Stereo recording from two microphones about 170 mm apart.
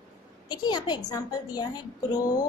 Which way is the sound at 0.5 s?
25° left (ahead or behind).